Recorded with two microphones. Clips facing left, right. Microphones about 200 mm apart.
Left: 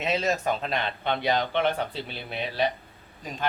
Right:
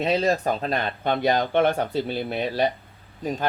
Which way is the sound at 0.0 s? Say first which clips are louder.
Right 4 dB; 35° right (ahead or behind).